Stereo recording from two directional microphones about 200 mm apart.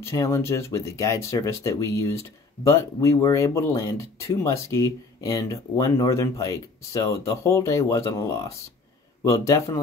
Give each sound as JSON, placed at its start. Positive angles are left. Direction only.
{"t": 0.0, "sound": "speech", "side_deg": 15}